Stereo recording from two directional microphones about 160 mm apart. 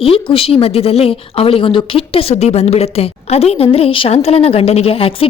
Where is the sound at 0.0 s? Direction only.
35° left (ahead or behind).